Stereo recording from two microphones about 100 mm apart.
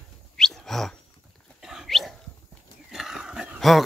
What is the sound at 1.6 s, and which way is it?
Dog, 5° right (ahead or behind).